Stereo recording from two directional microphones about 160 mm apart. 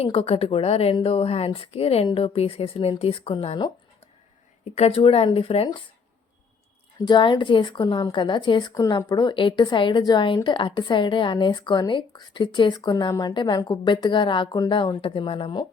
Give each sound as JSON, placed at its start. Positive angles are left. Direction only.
{"t": 0.0, "sound": "speech", "side_deg": 40}
{"t": 4.7, "sound": "speech", "side_deg": 40}
{"t": 7.0, "sound": "a woman's voice", "side_deg": 30}